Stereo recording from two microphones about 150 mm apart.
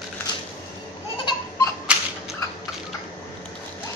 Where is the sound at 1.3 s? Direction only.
20° left (ahead or behind).